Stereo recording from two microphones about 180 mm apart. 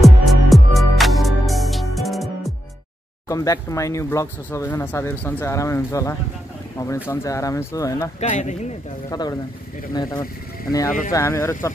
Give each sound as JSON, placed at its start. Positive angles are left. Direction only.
{"t": 0.0, "sound": "music", "side_deg": 0}
{"t": 3.3, "sound": "speech", "side_deg": 20}
{"t": 8.2, "sound": "speech", "side_deg": 40}
{"t": 9.1, "sound": "speech", "side_deg": 20}